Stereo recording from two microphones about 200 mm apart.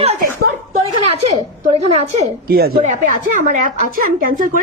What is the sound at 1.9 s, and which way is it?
Speech, 30° right (ahead or behind).